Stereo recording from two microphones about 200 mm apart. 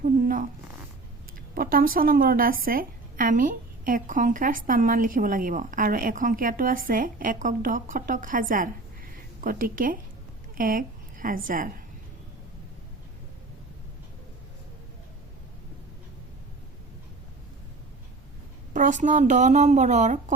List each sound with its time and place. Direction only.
0.0 s zipper: 40° right (ahead or behind)
1.5 s a woman's voice: 45° right (ahead or behind)
10.5 s a sound: 45° right (ahead or behind)
11.4 s a woman's voice: 45° right (ahead or behind)
18.7 s speech: 40° right (ahead or behind)